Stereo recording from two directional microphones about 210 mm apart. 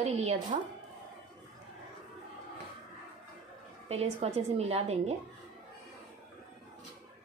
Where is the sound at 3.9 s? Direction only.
30° right (ahead or behind).